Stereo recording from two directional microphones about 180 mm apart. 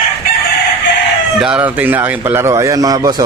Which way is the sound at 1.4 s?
10° right (ahead or behind).